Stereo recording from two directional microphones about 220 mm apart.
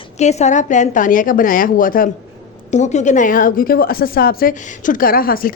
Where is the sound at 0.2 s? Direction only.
30° left (ahead or behind).